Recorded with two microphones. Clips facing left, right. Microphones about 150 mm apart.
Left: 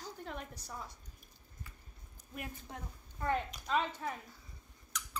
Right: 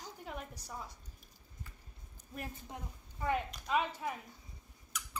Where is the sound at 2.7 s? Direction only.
20° right (ahead or behind).